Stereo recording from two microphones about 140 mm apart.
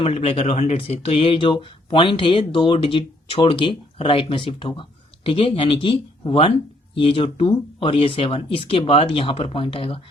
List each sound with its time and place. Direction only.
0.0 s speech: 45° left (ahead or behind)